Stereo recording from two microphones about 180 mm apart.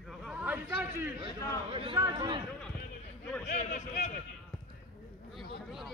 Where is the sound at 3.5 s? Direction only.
40° left (ahead or behind).